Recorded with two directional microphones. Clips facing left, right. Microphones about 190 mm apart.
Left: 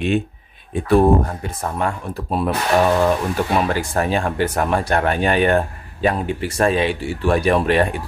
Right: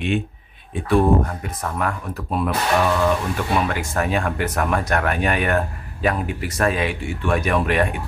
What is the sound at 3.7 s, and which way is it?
Speech, 35° left (ahead or behind).